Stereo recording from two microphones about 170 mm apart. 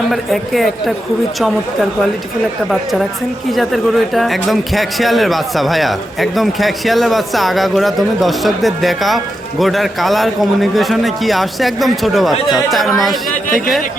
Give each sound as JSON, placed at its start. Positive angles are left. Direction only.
{"t": 0.1, "sound": "speech", "side_deg": 0}
{"t": 3.5, "sound": "speech", "side_deg": 0}